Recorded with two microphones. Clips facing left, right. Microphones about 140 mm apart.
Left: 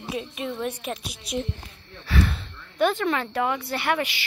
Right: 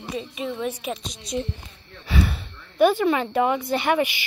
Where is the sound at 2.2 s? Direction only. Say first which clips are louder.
Even; 5° right (ahead or behind).